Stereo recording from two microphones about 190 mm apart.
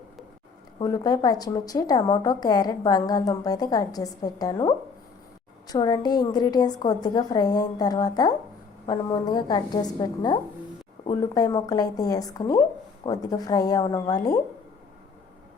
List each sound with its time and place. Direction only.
0.8 s a woman's voice: 20° left (ahead or behind)